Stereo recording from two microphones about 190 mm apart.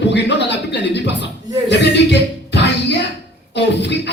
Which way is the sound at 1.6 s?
65° left (ahead or behind).